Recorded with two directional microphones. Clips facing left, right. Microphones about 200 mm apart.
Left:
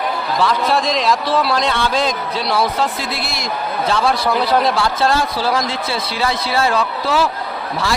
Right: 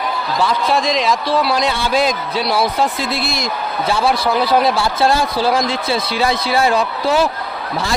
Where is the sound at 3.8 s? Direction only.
5° right (ahead or behind).